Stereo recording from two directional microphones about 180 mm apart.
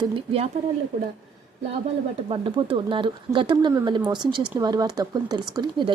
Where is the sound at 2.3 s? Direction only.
30° right (ahead or behind).